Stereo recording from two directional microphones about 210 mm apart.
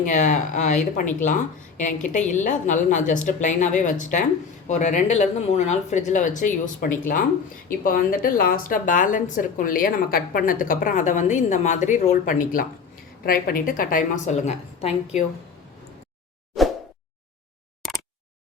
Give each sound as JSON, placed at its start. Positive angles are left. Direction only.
{"t": 0.0, "sound": "a woman's voice", "side_deg": 35}